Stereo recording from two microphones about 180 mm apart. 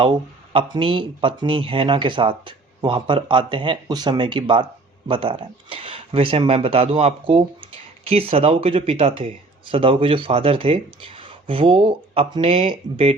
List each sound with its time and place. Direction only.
0.0 s speech: 30° right (ahead or behind)